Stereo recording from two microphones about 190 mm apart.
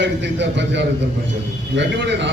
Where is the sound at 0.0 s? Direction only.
65° right (ahead or behind).